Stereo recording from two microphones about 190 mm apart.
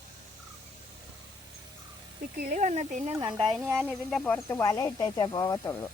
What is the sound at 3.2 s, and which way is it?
Speech, 25° right (ahead or behind).